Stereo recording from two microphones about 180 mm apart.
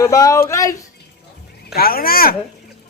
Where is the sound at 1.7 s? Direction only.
55° left (ahead or behind).